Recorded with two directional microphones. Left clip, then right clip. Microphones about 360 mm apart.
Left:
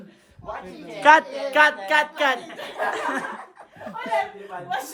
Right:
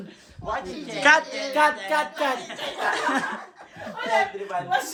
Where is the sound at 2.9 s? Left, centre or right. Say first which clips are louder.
Right 2 dB; centre.